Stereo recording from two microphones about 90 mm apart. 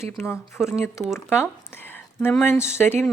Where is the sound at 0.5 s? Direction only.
5° right (ahead or behind).